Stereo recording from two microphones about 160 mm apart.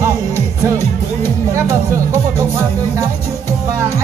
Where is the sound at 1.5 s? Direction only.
15° right (ahead or behind).